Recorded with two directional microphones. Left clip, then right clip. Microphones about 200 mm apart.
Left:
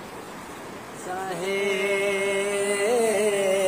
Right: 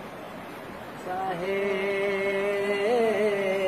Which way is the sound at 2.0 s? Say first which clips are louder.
Left 2 dB; 25° left (ahead or behind).